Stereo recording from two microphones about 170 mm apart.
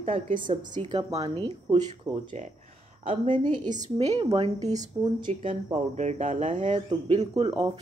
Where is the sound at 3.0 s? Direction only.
35° right (ahead or behind).